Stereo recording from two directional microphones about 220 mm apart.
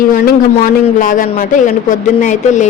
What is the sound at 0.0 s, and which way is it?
A woman's voice, 40° left (ahead or behind).